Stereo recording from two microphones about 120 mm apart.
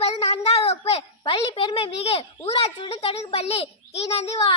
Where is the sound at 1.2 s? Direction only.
50° left (ahead or behind).